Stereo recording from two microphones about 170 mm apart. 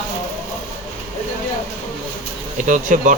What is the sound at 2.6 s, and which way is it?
Speech, 50° right (ahead or behind).